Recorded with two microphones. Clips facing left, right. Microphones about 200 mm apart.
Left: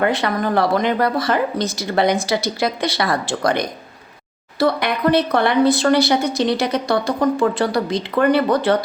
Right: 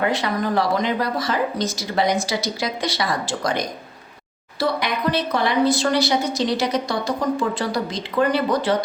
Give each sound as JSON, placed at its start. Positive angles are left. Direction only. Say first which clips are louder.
{"t": 0.1, "sound": "a woman's voice", "louder": "left 3 dB", "side_deg": 60}